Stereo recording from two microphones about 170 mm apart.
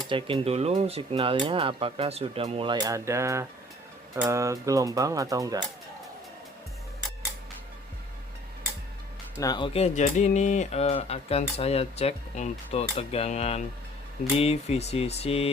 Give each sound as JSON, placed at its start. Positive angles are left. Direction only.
{"t": 0.1, "sound": "speech", "side_deg": -30}
{"t": 9.4, "sound": "speech", "side_deg": 25}